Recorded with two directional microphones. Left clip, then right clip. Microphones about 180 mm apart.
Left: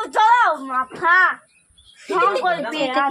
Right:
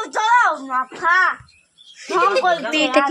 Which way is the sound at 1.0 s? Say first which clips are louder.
Left 1 dB; 10° left (ahead or behind).